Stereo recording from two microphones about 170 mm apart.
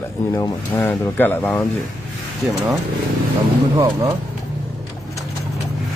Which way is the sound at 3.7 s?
20° right (ahead or behind).